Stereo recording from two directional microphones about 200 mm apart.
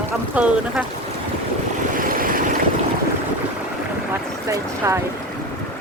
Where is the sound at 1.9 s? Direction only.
45° right (ahead or behind).